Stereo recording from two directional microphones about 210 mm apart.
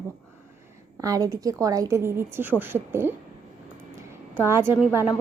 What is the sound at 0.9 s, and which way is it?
A woman's voice, 15° right (ahead or behind).